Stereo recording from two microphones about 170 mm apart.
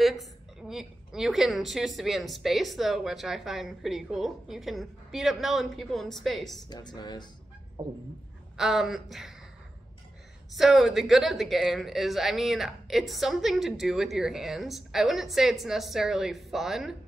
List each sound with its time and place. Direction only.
0.0 s a woman's voice: centre (ahead or behind)
6.7 s speech: 25° left (ahead or behind)
8.5 s a woman's voice: centre (ahead or behind)
10.5 s a woman's voice: centre (ahead or behind)